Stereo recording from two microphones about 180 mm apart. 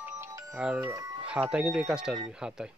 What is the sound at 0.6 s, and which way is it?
Speech, 5° right (ahead or behind).